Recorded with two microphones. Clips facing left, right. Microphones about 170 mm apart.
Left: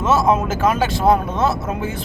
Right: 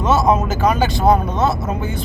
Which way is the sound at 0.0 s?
Centre (ahead or behind).